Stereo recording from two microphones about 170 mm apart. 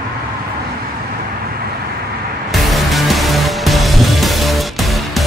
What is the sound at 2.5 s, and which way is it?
Music, centre (ahead or behind).